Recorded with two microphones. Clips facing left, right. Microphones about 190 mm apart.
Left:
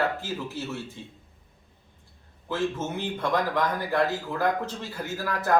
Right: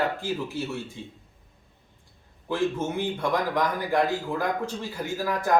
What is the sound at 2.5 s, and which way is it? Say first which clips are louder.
Speech: right 2 dB; 15° right (ahead or behind).